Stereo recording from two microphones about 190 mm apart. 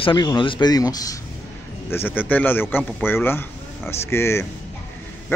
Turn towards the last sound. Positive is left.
turn(degrees=15)  # may be behind; listen again after turning